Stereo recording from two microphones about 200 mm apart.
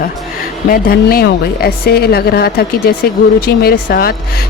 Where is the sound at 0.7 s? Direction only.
45° left (ahead or behind).